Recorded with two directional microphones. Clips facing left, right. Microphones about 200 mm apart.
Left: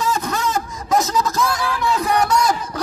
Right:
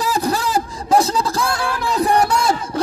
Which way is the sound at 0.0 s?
35° right (ahead or behind).